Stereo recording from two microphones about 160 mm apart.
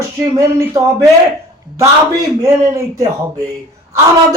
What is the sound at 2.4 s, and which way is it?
Speech, 20° right (ahead or behind).